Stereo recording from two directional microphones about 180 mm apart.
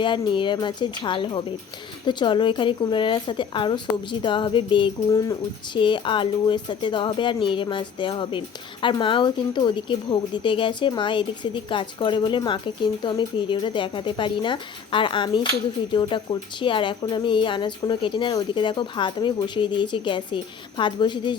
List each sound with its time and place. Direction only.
0.0 s speech: 25° left (ahead or behind)